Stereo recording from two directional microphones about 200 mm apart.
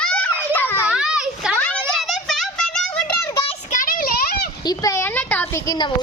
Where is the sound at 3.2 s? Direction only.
25° left (ahead or behind).